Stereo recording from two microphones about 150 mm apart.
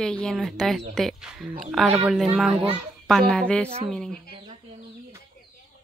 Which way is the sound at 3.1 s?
Centre (ahead or behind).